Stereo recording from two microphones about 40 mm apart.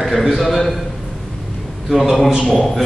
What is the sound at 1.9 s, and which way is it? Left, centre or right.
Speech, centre.